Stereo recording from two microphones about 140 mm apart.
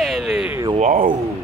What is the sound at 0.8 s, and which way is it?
Speech, 70° right (ahead or behind).